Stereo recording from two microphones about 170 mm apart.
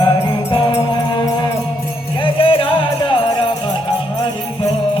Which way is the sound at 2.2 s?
30° left (ahead or behind).